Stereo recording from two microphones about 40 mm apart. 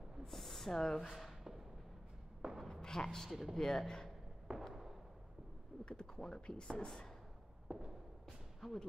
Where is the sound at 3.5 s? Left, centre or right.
Centre.